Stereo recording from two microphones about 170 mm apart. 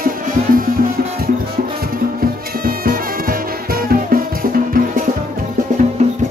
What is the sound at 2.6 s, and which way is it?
Music, 60° right (ahead or behind).